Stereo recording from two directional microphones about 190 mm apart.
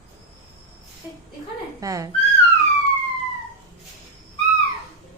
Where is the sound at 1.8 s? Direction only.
15° right (ahead or behind).